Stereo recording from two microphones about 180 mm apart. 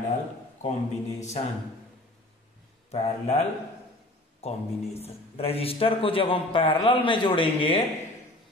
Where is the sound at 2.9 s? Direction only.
35° left (ahead or behind).